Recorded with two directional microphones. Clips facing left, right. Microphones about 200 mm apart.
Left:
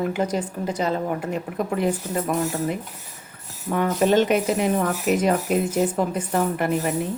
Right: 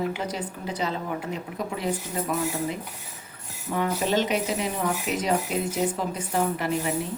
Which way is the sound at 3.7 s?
55° left (ahead or behind).